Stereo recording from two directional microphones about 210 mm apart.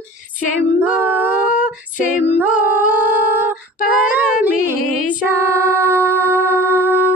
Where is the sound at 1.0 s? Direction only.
10° right (ahead or behind).